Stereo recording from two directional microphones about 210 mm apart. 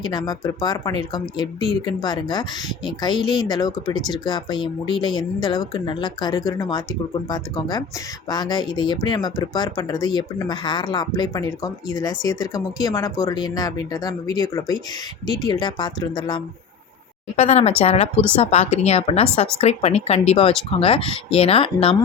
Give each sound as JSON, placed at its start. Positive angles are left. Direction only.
{"t": 0.0, "sound": "speech", "side_deg": 20}
{"t": 17.3, "sound": "speech", "side_deg": 30}